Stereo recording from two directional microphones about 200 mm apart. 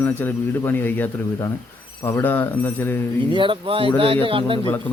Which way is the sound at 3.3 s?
25° right (ahead or behind).